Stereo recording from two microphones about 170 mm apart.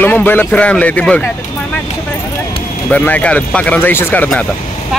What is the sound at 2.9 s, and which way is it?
Speech, 10° left (ahead or behind).